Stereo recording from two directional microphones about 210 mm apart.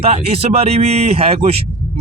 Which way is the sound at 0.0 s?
30° right (ahead or behind).